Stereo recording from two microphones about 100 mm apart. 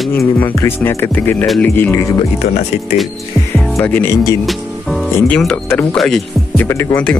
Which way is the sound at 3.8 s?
20° left (ahead or behind).